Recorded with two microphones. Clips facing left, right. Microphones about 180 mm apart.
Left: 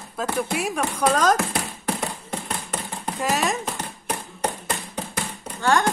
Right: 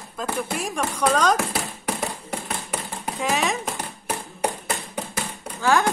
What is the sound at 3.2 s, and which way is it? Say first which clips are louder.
Speech: even; centre (ahead or behind).